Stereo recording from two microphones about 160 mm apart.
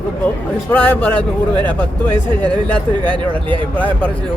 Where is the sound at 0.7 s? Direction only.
10° left (ahead or behind).